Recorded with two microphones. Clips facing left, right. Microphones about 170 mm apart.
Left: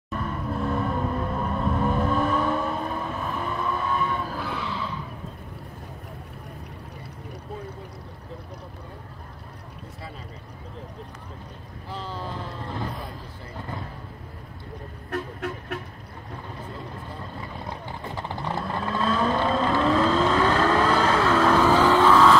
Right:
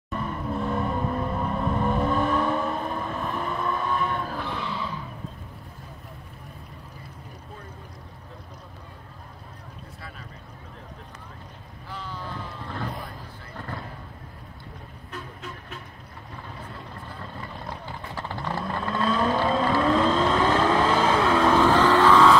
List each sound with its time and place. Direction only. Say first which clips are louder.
0.1 s vehicle: even; centre (ahead or behind)
11.9 s boat: left 3 dB; 30° left (ahead or behind)
15.0 s vehicle: left 9 dB; 65° left (ahead or behind)
17.6 s horse: left 2 dB; 15° left (ahead or behind)
18.6 s vehicle: even; 5° left (ahead or behind)